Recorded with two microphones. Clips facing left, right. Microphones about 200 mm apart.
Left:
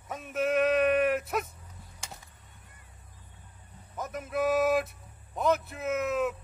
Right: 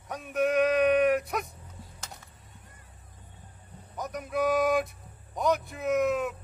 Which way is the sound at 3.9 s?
Centre (ahead or behind).